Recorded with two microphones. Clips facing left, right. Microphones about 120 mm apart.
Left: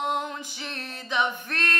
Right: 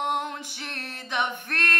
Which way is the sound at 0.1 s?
60° right (ahead or behind).